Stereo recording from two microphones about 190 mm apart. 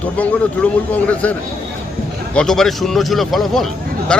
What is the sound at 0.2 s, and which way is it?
A man's voice, 5° left (ahead or behind).